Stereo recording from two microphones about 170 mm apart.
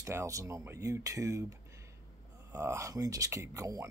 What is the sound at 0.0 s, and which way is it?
Speech, 15° right (ahead or behind).